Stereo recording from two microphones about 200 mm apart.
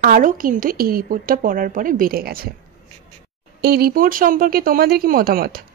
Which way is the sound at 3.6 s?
50° right (ahead or behind).